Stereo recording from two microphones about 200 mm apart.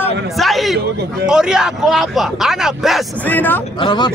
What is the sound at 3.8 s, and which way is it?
Speech, 20° left (ahead or behind).